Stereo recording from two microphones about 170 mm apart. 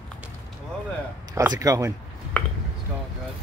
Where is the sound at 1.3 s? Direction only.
20° right (ahead or behind).